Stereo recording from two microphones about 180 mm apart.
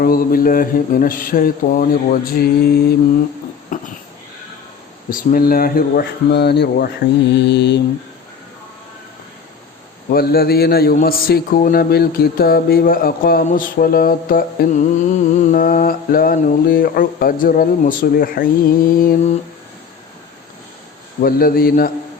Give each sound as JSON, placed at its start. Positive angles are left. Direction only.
{"t": 0.0, "sound": "mantra", "side_deg": 50}
{"t": 3.7, "sound": "a sound", "side_deg": 45}
{"t": 5.1, "sound": "a man's voice", "side_deg": 55}
{"t": 7.3, "sound": "mantra", "side_deg": 70}
{"t": 10.1, "sound": "a man's voice", "side_deg": 55}
{"t": 15.4, "sound": "mantra", "side_deg": 45}
{"t": 21.2, "sound": "mantra", "side_deg": 55}